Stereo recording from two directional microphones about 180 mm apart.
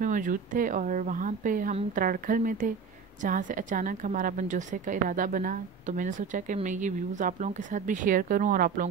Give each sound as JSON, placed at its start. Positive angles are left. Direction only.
{"t": 0.0, "sound": "a woman's voice", "side_deg": -45}